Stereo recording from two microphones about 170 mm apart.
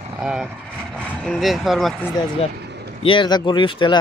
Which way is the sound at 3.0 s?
30° left (ahead or behind).